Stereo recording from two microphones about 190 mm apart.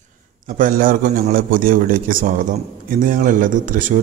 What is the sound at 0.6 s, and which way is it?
Speech, 45° right (ahead or behind).